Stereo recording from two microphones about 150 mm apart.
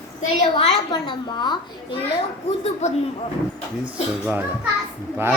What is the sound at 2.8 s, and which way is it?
Speech, 50° left (ahead or behind).